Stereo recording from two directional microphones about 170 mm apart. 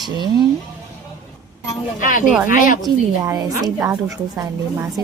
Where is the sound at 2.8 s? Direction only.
20° right (ahead or behind).